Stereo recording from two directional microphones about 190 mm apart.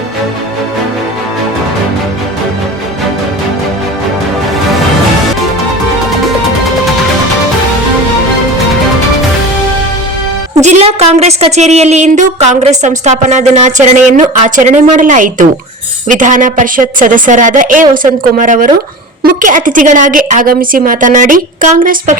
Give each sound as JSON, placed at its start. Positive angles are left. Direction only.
{"t": 10.6, "sound": "a woman's voice", "side_deg": -35}